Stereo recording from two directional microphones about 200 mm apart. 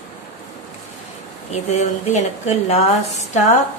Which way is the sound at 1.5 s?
35° left (ahead or behind).